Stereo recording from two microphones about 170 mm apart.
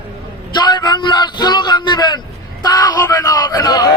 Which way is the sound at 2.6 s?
20° left (ahead or behind).